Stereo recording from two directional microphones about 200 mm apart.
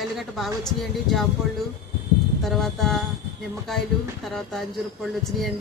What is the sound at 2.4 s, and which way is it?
Speech, centre (ahead or behind).